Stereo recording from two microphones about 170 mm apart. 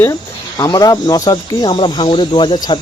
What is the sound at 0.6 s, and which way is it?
Speech, 25° left (ahead or behind).